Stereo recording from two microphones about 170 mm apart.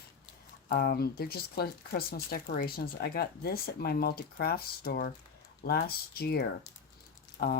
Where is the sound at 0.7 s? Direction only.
65° left (ahead or behind).